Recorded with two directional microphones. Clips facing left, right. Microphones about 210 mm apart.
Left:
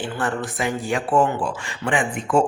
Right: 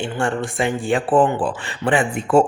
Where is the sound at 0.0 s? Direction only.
25° right (ahead or behind).